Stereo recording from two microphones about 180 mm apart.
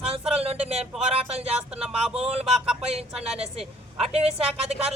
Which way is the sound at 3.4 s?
35° right (ahead or behind).